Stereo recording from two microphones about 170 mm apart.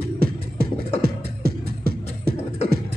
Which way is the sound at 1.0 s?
60° right (ahead or behind).